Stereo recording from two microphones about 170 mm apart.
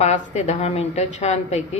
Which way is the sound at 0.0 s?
45° left (ahead or behind).